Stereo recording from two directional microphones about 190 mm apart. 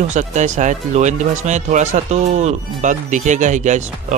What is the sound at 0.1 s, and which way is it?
Speech, 40° right (ahead or behind).